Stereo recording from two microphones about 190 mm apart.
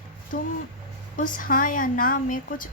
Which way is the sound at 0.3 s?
45° left (ahead or behind).